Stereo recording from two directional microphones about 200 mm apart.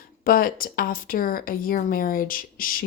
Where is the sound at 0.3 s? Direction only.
45° left (ahead or behind).